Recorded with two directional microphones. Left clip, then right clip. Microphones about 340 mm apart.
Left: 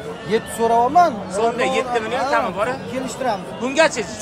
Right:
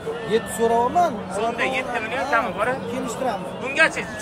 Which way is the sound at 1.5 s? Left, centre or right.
Centre.